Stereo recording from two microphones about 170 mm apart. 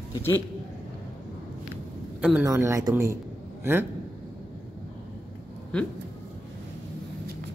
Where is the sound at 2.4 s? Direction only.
15° right (ahead or behind).